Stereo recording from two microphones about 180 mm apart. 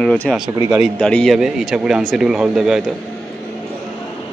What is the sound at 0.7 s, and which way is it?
Speech, 5° right (ahead or behind).